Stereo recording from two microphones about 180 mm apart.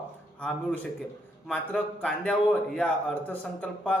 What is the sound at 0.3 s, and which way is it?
A man's voice, 5° left (ahead or behind).